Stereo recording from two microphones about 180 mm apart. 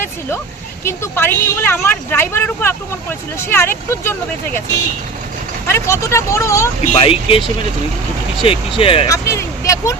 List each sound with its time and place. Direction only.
0.9 s speech: 15° left (ahead or behind)
5.6 s speech: 15° left (ahead or behind)
6.9 s speech: 30° left (ahead or behind)
9.0 s a sound: 15° left (ahead or behind)